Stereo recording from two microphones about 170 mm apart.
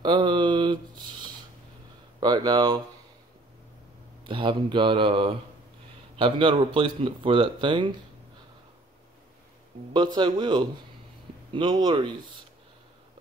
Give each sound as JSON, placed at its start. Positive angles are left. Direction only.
{"t": 0.0, "sound": "a sound", "side_deg": -25}
{"t": 2.1, "sound": "speech", "side_deg": -25}
{"t": 4.2, "sound": "a man's voice", "side_deg": -30}
{"t": 9.7, "sound": "a man's voice", "side_deg": -35}